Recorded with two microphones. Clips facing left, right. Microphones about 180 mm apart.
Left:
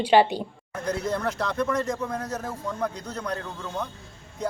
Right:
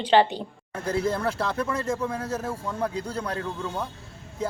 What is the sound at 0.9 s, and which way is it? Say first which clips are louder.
A man's voice: right 2 dB; 30° right (ahead or behind).